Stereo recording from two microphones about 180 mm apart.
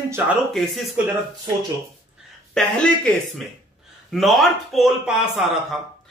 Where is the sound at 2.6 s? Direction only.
5° left (ahead or behind).